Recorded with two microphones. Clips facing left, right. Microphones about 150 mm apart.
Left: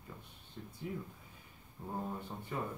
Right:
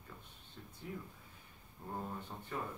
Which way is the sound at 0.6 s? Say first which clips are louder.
Left 6 dB; 5° left (ahead or behind).